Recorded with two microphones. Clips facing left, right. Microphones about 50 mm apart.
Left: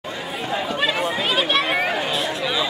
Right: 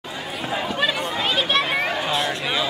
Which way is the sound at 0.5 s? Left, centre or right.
Centre.